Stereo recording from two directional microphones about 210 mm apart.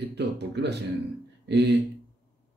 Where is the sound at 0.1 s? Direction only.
55° right (ahead or behind).